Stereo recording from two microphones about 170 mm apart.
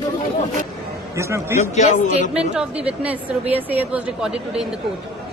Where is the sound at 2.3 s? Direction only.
5° right (ahead or behind).